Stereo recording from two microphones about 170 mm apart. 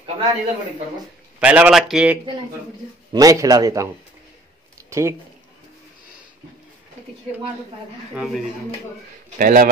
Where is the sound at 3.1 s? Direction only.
20° right (ahead or behind).